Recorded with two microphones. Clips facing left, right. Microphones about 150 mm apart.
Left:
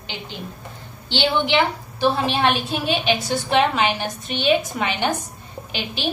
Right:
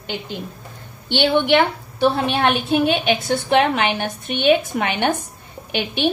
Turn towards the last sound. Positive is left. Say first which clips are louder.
# right 7 dB
turn(degrees=-55)  # may be behind; listen again after turning